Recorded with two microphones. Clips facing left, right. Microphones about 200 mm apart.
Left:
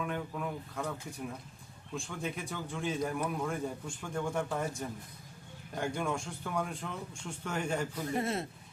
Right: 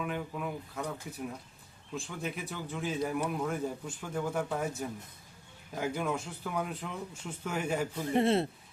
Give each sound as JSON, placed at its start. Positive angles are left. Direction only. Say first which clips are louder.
{"t": 0.0, "sound": "speech", "louder": "right 1 dB", "side_deg": -5}
{"t": 7.9, "sound": "a man's voice", "louder": "right 6 dB", "side_deg": -25}